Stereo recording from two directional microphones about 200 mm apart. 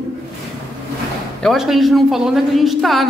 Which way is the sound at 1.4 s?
Centre (ahead or behind).